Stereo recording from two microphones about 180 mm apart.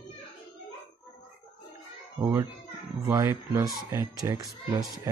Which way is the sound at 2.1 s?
25° right (ahead or behind).